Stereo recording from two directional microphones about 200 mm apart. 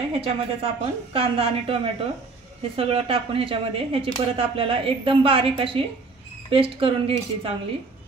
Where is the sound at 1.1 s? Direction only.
30° right (ahead or behind).